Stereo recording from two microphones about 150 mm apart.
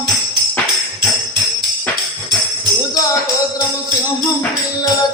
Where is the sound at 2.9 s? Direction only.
25° left (ahead or behind).